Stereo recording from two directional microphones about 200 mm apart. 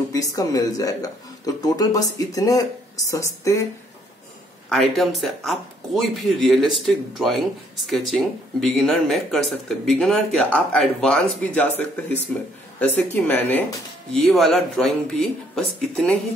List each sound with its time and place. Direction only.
0.1 s speech: 15° left (ahead or behind)
4.6 s speech: centre (ahead or behind)
12.8 s speech: 10° left (ahead or behind)